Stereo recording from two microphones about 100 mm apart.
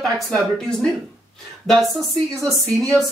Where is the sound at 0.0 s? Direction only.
5° left (ahead or behind).